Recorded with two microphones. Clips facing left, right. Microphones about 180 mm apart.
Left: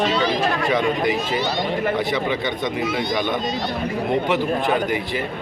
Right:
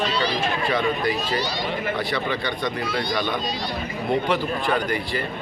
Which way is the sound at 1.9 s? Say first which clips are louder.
Left 4 dB; 20° left (ahead or behind).